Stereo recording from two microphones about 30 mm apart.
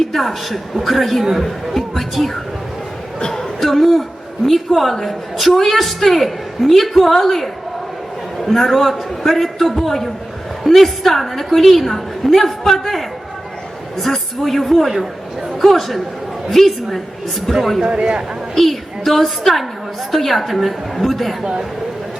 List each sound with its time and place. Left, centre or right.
0.0 s a woman's voice: centre
3.2 s speech: left
3.6 s a woman's voice: centre
14.0 s a woman's voice: centre
17.9 s speech: right
18.5 s a woman's voice: centre